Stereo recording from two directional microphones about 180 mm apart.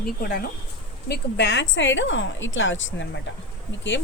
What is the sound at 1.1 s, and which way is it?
Speech, 80° left.